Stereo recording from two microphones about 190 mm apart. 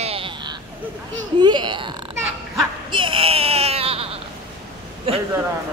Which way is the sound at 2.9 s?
25° right (ahead or behind).